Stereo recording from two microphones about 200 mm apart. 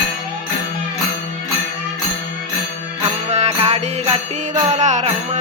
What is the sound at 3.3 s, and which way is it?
Music, 30° right (ahead or behind).